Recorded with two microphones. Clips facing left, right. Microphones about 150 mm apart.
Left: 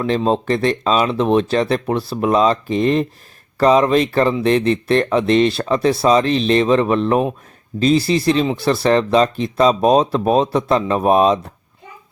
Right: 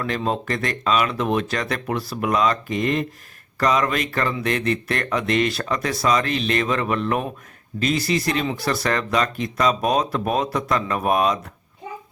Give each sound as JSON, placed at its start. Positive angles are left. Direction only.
{"t": 0.0, "sound": "speech", "side_deg": 25}